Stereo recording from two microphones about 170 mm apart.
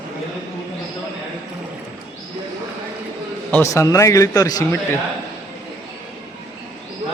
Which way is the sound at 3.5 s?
20° left (ahead or behind).